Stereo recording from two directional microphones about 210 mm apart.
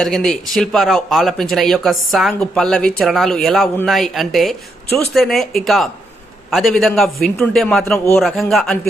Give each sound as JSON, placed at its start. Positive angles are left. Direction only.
{"t": 0.0, "sound": "a man's voice", "side_deg": 0}
{"t": 8.2, "sound": "speech", "side_deg": 0}